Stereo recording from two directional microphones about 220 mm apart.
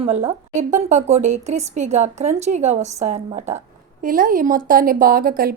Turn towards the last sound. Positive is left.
turn(degrees=-40)  # may be behind; listen again after turning